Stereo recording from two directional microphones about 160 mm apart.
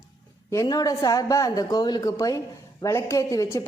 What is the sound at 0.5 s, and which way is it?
A woman's voice, 20° left (ahead or behind).